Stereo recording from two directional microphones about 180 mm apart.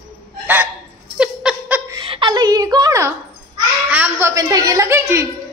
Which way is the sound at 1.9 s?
25° right (ahead or behind).